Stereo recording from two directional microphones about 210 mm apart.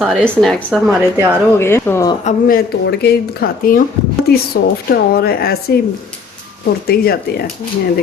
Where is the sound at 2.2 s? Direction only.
45° left (ahead or behind).